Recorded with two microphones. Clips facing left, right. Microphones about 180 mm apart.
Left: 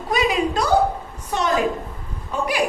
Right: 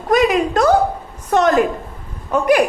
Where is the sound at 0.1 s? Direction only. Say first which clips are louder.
Right 6 dB; 55° right (ahead or behind).